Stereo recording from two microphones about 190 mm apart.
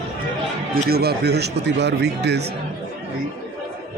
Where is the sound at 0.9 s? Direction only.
55° right (ahead or behind).